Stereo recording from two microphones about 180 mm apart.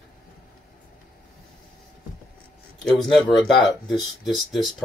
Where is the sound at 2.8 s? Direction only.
Centre (ahead or behind).